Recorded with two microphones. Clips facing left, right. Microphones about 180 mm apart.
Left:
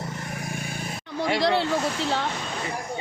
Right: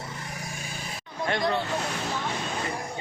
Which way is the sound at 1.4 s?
80° left.